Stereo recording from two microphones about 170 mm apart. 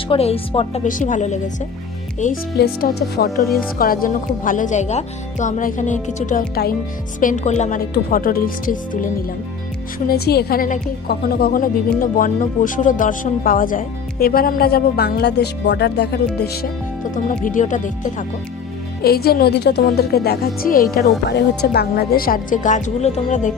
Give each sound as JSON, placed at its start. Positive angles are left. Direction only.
{"t": 0.1, "sound": "speech", "side_deg": 35}
{"t": 0.9, "sound": "speech", "side_deg": 50}
{"t": 2.6, "sound": "speech", "side_deg": 65}
{"t": 7.9, "sound": "speech", "side_deg": 60}
{"t": 10.1, "sound": "speech", "side_deg": 70}
{"t": 17.2, "sound": "speech", "side_deg": 50}
{"t": 19.0, "sound": "speech", "side_deg": 65}